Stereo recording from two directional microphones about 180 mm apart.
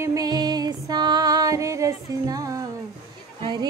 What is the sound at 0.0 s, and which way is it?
Music, 20° right (ahead or behind).